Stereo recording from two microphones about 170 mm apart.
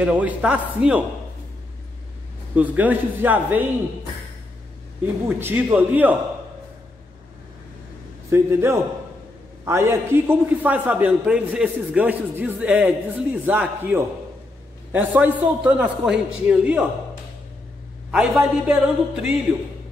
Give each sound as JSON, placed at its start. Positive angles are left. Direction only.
{"t": 0.0, "sound": "a man's voice", "side_deg": -10}
{"t": 2.5, "sound": "a man's voice", "side_deg": -10}
{"t": 5.3, "sound": "a man's voice", "side_deg": -10}
{"t": 8.3, "sound": "a man's voice", "side_deg": -15}
{"t": 18.1, "sound": "a man's voice", "side_deg": -5}